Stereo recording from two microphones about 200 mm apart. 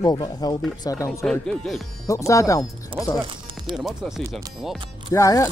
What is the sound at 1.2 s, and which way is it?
Speech, 5° left (ahead or behind).